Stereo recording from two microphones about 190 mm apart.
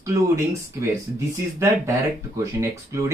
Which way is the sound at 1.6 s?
15° right (ahead or behind).